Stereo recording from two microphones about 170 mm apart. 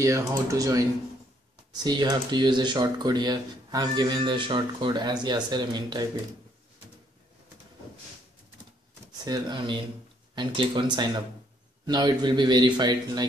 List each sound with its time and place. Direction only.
0.0 s speech: 20° right (ahead or behind)
9.2 s speech: 25° right (ahead or behind)